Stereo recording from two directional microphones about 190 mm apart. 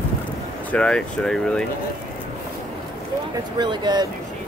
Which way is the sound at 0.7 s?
5° left (ahead or behind).